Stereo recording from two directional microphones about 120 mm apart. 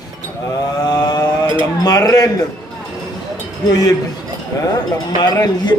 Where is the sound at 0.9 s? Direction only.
35° left (ahead or behind).